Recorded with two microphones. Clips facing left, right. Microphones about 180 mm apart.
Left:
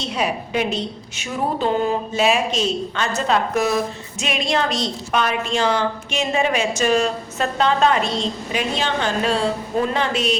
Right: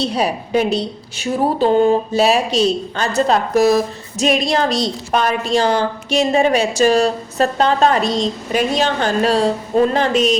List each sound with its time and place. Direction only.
0.0 s a woman's voice: 35° right (ahead or behind)